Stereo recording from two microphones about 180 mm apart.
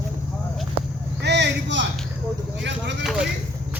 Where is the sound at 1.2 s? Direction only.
75° right (ahead or behind).